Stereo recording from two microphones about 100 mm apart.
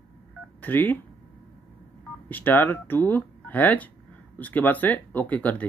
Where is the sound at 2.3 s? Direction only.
20° left (ahead or behind).